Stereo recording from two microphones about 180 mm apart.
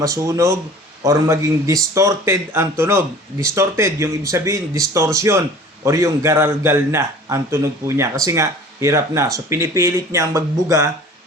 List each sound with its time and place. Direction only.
0.0 s speech: 20° right (ahead or behind)